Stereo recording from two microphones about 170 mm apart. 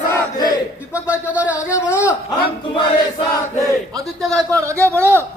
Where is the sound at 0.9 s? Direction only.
10° right (ahead or behind).